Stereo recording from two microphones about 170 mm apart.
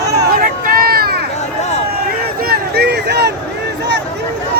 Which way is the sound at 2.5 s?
75° right (ahead or behind).